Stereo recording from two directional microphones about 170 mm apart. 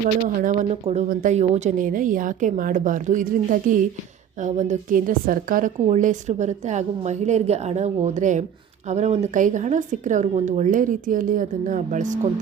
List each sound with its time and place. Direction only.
0.4 s a woman's voice: 40° right (ahead or behind)